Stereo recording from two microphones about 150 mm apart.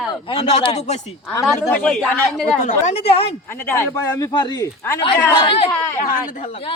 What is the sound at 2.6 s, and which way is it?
Speech, 50° left (ahead or behind).